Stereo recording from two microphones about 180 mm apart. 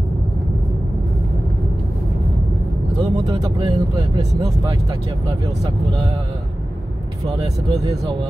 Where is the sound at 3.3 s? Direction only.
25° right (ahead or behind).